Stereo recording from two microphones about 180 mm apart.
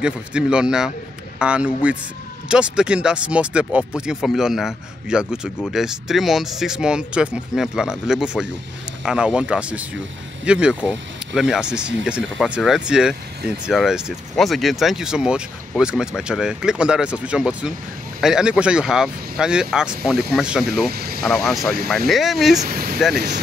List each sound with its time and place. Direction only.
0.0 s speech: 5° right (ahead or behind)
20.9 s speech: 60° right (ahead or behind)
21.2 s speech: centre (ahead or behind)
22.6 s speech: 55° right (ahead or behind)